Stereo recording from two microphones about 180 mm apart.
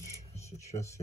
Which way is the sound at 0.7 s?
15° left (ahead or behind).